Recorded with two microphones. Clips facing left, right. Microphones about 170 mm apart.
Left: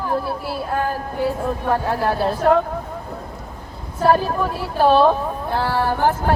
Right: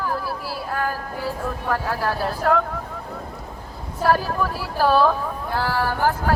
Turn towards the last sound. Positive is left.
turn(degrees=25)  # may be behind; listen again after turning